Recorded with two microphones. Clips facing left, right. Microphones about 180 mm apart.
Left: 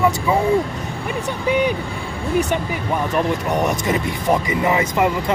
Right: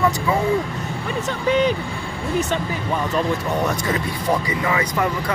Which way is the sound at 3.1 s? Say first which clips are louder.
Left 2 dB; 20° left (ahead or behind).